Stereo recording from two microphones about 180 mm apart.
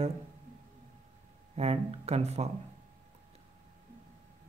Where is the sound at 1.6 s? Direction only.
35° right (ahead or behind).